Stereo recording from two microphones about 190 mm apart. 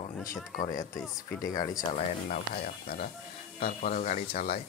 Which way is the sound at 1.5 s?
20° left (ahead or behind).